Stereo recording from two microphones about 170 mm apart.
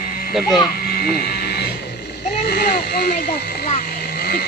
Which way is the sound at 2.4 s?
70° left (ahead or behind).